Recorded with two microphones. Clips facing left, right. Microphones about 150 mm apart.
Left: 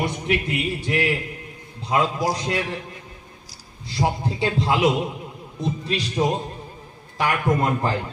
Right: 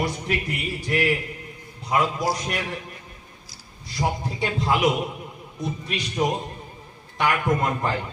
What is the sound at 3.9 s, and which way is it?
A man's voice, 30° left (ahead or behind).